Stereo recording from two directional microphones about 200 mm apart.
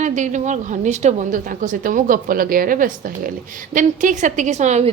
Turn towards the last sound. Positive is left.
turn(degrees=-35)  # may be behind; listen again after turning